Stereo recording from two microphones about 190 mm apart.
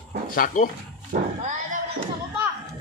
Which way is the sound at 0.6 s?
45° left (ahead or behind).